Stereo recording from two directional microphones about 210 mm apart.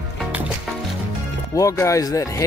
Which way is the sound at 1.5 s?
15° left (ahead or behind).